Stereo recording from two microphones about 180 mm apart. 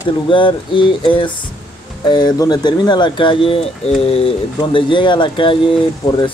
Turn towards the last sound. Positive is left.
turn(degrees=25)  # may be behind; listen again after turning